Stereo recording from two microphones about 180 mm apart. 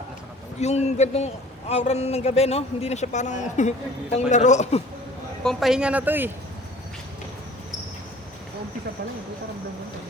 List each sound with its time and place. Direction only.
0.6 s a man's voice: 40° left (ahead or behind)
5.4 s speech: centre (ahead or behind)